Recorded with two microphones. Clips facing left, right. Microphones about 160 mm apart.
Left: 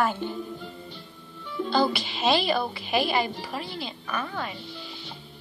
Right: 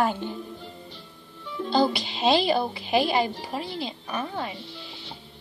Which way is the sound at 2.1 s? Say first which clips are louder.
Right 2 dB; 25° right (ahead or behind).